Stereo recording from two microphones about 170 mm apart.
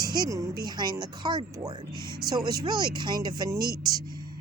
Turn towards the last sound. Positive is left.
turn(degrees=-20)  # may be behind; listen again after turning